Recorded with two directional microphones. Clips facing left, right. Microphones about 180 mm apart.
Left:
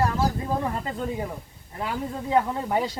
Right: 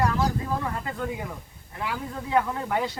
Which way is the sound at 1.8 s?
35° left (ahead or behind).